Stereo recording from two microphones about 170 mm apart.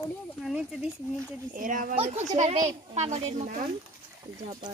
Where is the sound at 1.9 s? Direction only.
40° right (ahead or behind).